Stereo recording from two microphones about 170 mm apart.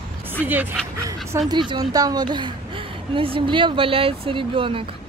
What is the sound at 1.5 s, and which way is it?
A woman's voice, 25° right (ahead or behind).